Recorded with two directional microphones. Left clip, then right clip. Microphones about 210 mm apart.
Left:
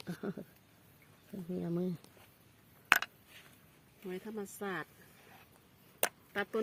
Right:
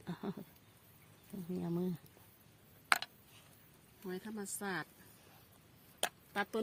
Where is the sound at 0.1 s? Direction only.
35° left (ahead or behind).